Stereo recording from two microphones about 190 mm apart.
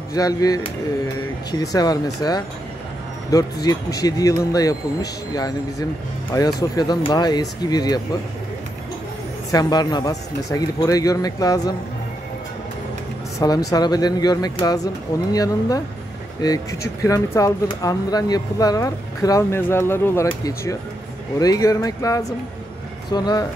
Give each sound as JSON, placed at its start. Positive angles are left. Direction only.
{"t": 0.1, "sound": "speech", "side_deg": 20}
{"t": 3.6, "sound": "speech", "side_deg": 20}
{"t": 9.5, "sound": "speech", "side_deg": 20}
{"t": 13.4, "sound": "speech", "side_deg": 20}